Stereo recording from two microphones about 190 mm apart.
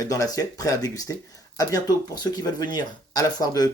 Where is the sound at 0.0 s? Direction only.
20° left (ahead or behind).